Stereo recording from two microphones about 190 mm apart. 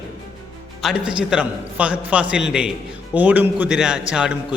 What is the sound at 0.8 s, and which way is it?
A man's voice, 5° right (ahead or behind).